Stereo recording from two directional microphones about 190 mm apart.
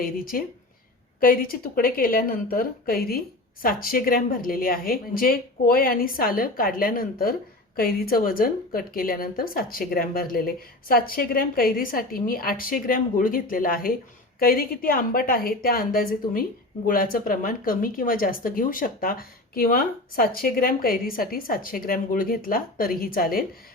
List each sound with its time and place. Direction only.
0.0 s speech: 50° left (ahead or behind)